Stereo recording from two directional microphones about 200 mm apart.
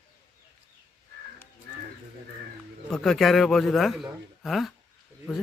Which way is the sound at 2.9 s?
Centre (ahead or behind).